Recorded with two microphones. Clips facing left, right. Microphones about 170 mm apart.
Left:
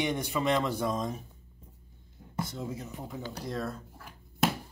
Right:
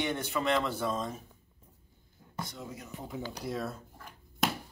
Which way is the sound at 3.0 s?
5° left (ahead or behind).